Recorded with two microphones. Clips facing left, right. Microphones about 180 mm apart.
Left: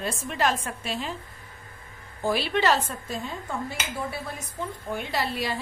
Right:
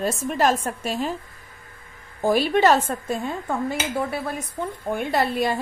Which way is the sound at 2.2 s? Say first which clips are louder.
Right 6 dB; 45° right (ahead or behind).